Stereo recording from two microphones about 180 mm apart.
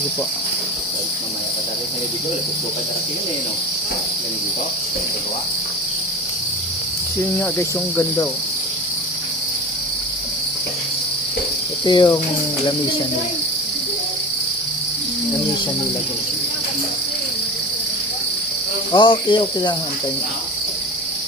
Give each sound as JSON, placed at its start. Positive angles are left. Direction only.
{"t": 11.9, "sound": "cricket", "side_deg": 25}
{"t": 18.9, "sound": "cricket", "side_deg": 25}